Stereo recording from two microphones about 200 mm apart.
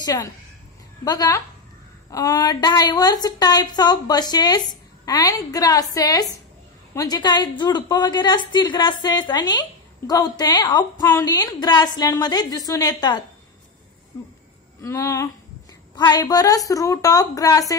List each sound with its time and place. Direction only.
0.0 s a woman's voice: 20° left (ahead or behind)
14.8 s a woman's voice: 15° left (ahead or behind)